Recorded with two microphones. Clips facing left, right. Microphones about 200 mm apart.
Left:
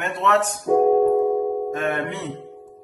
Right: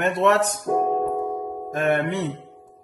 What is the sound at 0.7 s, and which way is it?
Music, 5° left (ahead or behind).